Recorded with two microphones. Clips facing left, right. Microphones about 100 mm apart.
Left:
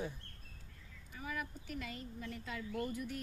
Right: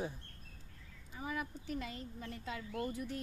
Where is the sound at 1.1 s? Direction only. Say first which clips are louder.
Right 2 dB; 25° right (ahead or behind).